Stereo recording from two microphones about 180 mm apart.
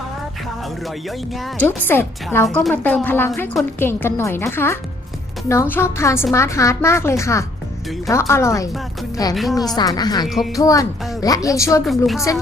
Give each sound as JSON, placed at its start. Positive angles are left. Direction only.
{"t": 0.9, "sound": "speech", "side_deg": 0}
{"t": 1.6, "sound": "a woman's voice", "side_deg": 10}
{"t": 9.3, "sound": "speech", "side_deg": 0}
{"t": 9.7, "sound": "a woman's voice", "side_deg": 20}
{"t": 10.2, "sound": "speech", "side_deg": 0}
{"t": 10.5, "sound": "a woman's voice", "side_deg": 20}
{"t": 11.9, "sound": "speech", "side_deg": 0}